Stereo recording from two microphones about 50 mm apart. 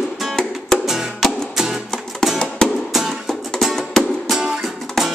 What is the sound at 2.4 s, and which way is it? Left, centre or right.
Music, centre.